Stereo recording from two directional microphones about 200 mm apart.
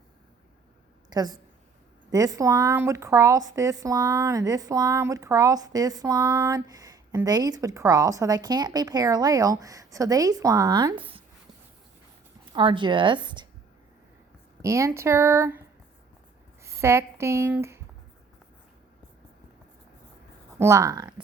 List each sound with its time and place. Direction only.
1.1 s a woman's voice: 20° right (ahead or behind)
12.5 s a woman's voice: 25° right (ahead or behind)
14.6 s speech: 15° right (ahead or behind)
16.6 s speech: 15° right (ahead or behind)
20.6 s speech: 15° right (ahead or behind)